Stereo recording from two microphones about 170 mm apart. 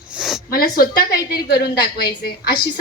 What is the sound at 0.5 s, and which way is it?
A woman's voice, 60° left (ahead or behind).